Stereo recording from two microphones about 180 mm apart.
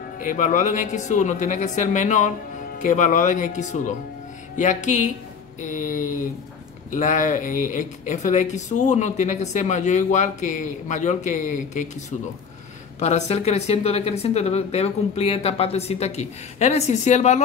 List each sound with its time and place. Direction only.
0.2 s speech: 45° left (ahead or behind)
13.0 s speech: 35° left (ahead or behind)